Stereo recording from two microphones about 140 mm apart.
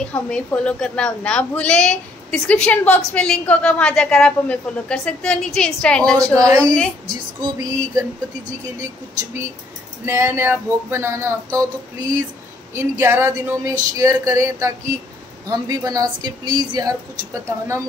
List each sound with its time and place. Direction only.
0.0 s a woman's voice: 10° left (ahead or behind)
6.3 s speech: 25° right (ahead or behind)
6.6 s a woman's voice: 5° left (ahead or behind)
7.5 s speech: 25° right (ahead or behind)
10.0 s speech: 20° right (ahead or behind)
12.7 s speech: 20° right (ahead or behind)